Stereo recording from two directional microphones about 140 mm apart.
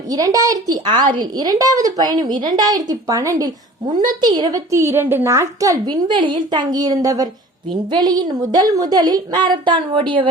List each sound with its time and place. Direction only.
0.1 s a woman's voice: 25° right (ahead or behind)